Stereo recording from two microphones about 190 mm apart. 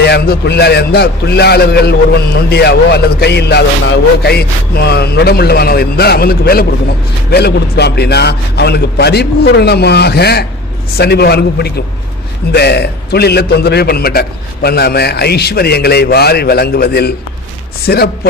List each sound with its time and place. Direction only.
0.0 s a man's voice: 60° left (ahead or behind)